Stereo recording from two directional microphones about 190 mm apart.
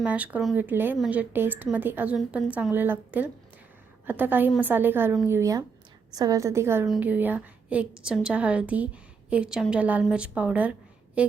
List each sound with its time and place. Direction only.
0.0 s speech: 5° right (ahead or behind)